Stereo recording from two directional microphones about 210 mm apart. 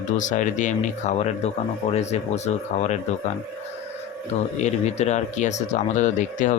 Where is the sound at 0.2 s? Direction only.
35° left (ahead or behind).